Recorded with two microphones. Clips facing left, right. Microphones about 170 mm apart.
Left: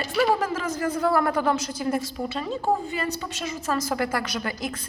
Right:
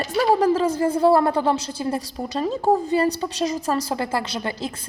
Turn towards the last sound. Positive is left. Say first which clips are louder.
# right 2 dB
turn(degrees=-30)  # may be behind; listen again after turning